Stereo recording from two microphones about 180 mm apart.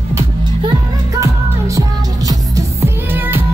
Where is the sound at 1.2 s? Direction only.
20° right (ahead or behind).